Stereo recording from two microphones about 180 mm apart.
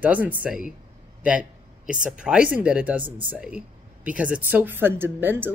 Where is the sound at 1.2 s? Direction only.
5° right (ahead or behind).